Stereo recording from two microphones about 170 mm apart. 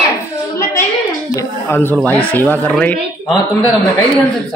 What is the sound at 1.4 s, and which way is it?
Speech, 15° left (ahead or behind).